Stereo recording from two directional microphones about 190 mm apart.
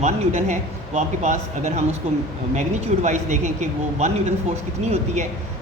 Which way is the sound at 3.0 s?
40° right (ahead or behind).